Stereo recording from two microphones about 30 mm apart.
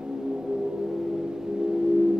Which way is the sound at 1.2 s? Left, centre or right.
Right.